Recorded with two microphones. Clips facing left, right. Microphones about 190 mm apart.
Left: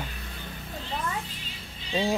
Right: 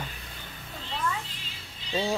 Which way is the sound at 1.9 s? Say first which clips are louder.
Left 2 dB; 15° left (ahead or behind).